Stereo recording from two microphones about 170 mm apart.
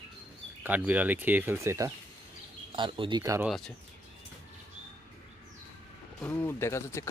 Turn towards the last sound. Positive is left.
turn(degrees=15)  # may be behind; listen again after turning